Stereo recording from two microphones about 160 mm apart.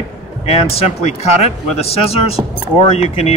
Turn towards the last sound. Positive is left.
turn(degrees=40)  # may be behind; listen again after turning